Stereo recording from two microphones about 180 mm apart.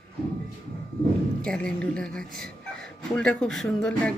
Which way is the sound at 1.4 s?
5° left (ahead or behind).